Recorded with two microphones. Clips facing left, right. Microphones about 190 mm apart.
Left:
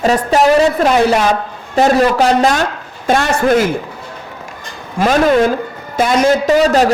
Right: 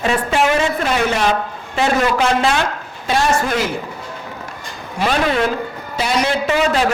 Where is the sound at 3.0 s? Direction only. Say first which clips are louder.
Left 4 dB; 50° left (ahead or behind).